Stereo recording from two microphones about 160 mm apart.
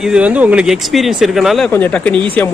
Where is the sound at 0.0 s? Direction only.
5° right (ahead or behind).